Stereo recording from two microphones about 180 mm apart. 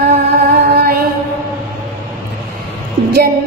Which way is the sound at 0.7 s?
60° right (ahead or behind).